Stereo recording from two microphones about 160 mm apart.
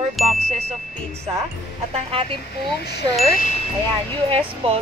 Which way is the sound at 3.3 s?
60° left (ahead or behind).